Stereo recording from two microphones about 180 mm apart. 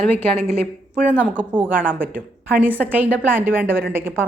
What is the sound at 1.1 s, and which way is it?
A woman's voice, 10° right (ahead or behind).